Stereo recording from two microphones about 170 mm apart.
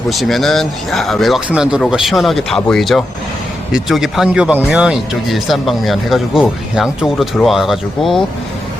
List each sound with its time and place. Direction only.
0.1 s speech: centre (ahead or behind)